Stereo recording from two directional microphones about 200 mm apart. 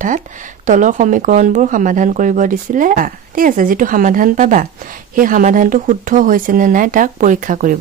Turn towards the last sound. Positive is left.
turn(degrees=-40)  # may be behind; listen again after turning